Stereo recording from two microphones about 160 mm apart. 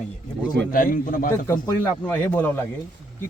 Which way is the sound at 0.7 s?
60° left (ahead or behind).